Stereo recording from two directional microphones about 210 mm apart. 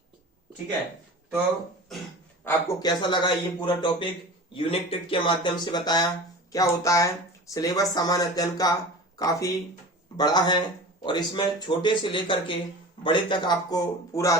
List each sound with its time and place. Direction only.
2.4 s a man's voice: 15° left (ahead or behind)